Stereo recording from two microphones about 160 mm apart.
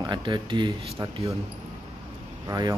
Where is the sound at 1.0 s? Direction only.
20° right (ahead or behind).